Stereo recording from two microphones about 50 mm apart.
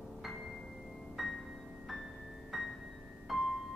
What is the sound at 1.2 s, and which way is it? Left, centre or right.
Music, centre.